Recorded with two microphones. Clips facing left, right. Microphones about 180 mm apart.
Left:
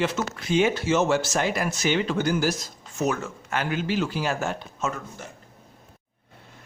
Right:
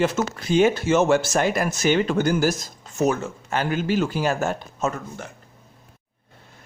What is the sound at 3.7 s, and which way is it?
Speech, 45° right (ahead or behind).